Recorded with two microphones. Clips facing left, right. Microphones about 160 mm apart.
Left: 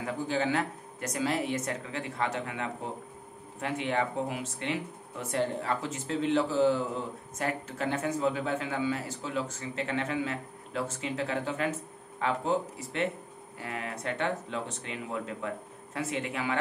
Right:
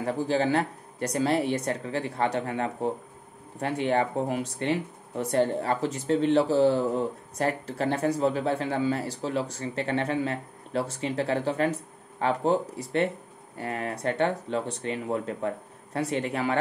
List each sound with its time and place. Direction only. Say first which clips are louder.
0.0 s speech: right 5 dB; 35° right (ahead or behind)